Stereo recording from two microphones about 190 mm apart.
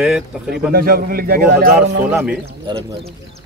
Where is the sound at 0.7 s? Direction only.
50° right (ahead or behind).